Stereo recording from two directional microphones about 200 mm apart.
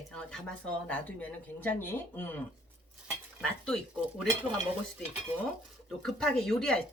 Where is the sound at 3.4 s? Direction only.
5° left (ahead or behind).